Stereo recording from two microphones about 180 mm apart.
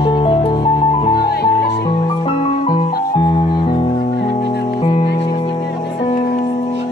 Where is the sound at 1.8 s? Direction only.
30° left (ahead or behind).